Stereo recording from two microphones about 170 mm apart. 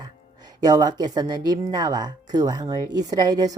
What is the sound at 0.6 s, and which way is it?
Speech, 20° right (ahead or behind).